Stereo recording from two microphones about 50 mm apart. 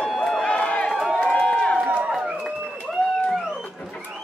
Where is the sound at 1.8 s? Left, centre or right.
Right.